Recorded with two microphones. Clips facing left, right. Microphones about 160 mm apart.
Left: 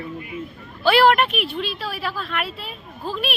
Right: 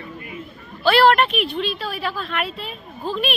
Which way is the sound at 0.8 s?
10° left (ahead or behind).